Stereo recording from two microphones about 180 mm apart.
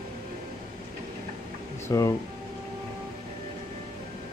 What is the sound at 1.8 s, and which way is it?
Speech, 20° left (ahead or behind).